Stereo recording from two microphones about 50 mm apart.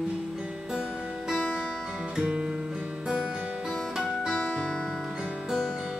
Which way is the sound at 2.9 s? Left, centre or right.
Right.